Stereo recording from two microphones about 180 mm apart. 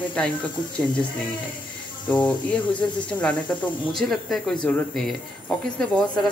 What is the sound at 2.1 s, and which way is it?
Speech, 25° left (ahead or behind).